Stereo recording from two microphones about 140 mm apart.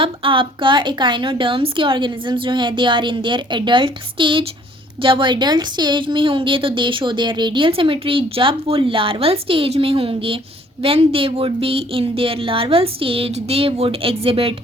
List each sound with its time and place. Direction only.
0.0 s a woman's voice: 40° right (ahead or behind)